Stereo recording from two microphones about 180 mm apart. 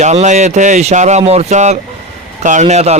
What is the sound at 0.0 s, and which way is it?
A man's voice, 40° right (ahead or behind).